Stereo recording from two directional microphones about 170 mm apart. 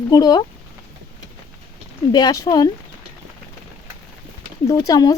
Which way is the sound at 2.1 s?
20° left (ahead or behind).